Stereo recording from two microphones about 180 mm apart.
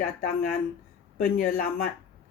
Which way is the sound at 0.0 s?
55° left (ahead or behind).